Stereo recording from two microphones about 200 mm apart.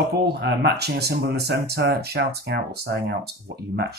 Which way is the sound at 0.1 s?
55° right (ahead or behind).